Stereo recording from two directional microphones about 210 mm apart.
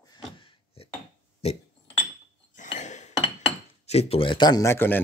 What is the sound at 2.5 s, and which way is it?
Cutlery, 35° left (ahead or behind).